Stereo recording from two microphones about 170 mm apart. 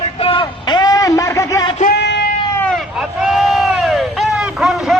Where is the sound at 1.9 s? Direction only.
85° left.